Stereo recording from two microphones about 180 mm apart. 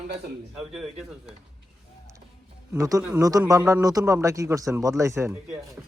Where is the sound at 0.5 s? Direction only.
Centre (ahead or behind).